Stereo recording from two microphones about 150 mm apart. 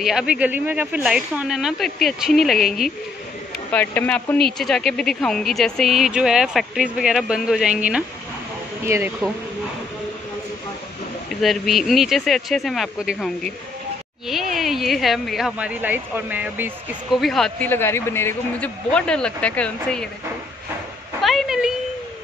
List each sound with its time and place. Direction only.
0.0 s a man's voice: 5° right (ahead or behind)
3.7 s a man's voice: 10° left (ahead or behind); by 9.3 s 15° right (ahead or behind)
11.4 s a man's voice: centre (ahead or behind)
14.5 s a man's voice: centre (ahead or behind)
17.2 s a man's voice: centre (ahead or behind)
17.6 s speech: 15° left (ahead or behind)
21.2 s a sound: centre (ahead or behind)